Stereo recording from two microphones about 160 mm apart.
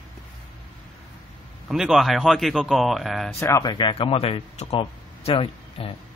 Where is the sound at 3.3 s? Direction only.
20° left (ahead or behind).